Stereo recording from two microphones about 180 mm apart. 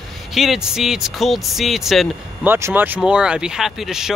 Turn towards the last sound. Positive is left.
turn(degrees=0)  # may be behind; listen again after turning